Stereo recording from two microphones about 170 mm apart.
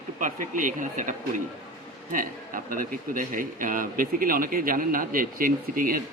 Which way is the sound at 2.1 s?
55° right (ahead or behind).